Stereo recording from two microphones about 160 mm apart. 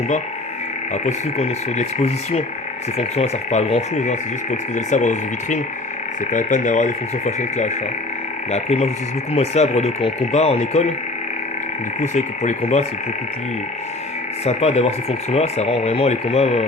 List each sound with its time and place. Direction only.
1.0 s speech: 40° left (ahead or behind)
11.9 s speech: 45° left (ahead or behind)
14.4 s speech: 40° left (ahead or behind)